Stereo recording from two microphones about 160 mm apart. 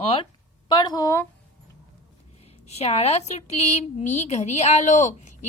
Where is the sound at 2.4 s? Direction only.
40° left (ahead or behind).